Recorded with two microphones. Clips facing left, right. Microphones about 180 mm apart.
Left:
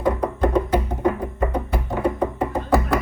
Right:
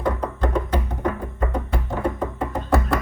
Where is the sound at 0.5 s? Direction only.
15° left (ahead or behind).